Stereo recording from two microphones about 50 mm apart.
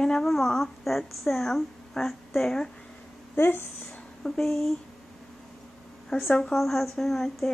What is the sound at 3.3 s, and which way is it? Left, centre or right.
Speech, left.